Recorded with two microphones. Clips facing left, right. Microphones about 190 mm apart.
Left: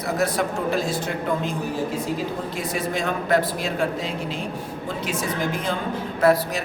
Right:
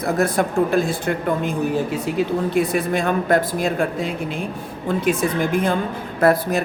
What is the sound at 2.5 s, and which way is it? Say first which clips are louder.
Speech: right 7 dB; 60° right (ahead or behind).